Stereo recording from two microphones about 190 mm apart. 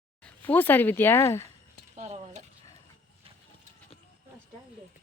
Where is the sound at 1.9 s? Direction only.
35° right (ahead or behind).